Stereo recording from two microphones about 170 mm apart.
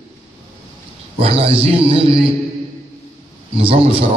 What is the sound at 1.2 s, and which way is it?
Speech, 35° right (ahead or behind).